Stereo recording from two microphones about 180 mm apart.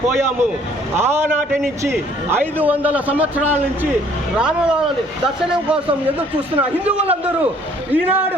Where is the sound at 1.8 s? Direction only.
10° right (ahead or behind).